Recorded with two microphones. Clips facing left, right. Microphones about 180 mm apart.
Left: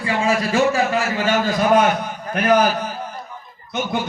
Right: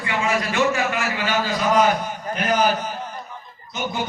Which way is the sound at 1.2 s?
50° left (ahead or behind).